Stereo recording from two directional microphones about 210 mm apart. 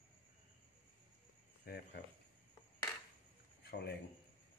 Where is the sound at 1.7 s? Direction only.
50° left (ahead or behind).